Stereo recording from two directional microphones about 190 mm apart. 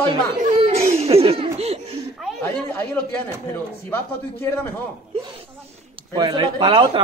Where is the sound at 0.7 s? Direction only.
30° right (ahead or behind).